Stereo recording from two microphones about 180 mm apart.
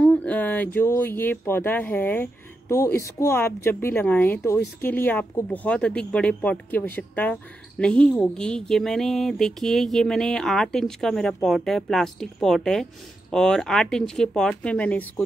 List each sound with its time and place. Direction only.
0.0 s speech: 5° left (ahead or behind)